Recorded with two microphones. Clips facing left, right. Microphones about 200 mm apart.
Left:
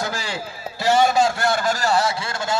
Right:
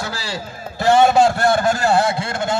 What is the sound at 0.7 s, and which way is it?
A man's voice, 55° right (ahead or behind).